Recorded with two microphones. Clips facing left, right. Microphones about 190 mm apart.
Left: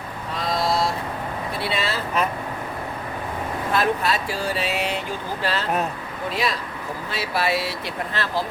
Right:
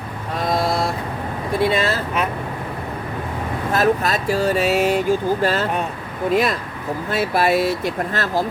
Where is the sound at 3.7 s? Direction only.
45° right (ahead or behind).